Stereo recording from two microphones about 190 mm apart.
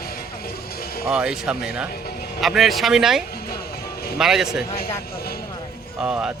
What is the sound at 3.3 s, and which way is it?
Music, 55° left (ahead or behind).